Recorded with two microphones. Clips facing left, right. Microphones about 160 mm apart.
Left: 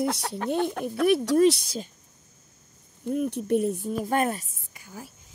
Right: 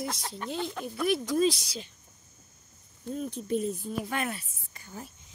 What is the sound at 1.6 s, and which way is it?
Speech, 45° left (ahead or behind).